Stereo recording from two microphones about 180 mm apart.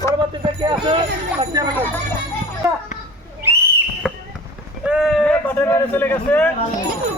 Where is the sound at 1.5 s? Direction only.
15° right (ahead or behind).